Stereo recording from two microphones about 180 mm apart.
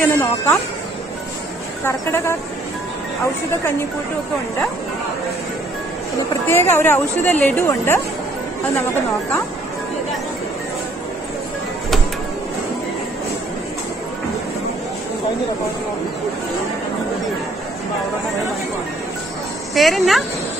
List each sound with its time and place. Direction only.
0.0 s a woman's voice: 10° left (ahead or behind)
1.9 s a woman's voice: 15° left (ahead or behind)
6.4 s a woman's voice: 15° left (ahead or behind)
19.7 s speech: centre (ahead or behind)